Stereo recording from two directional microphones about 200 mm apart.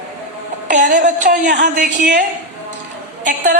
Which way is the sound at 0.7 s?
40° right (ahead or behind).